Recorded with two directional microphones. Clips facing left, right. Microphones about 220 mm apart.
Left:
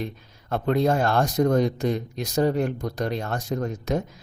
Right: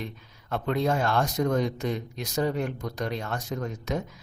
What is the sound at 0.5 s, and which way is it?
Speech, 40° left (ahead or behind).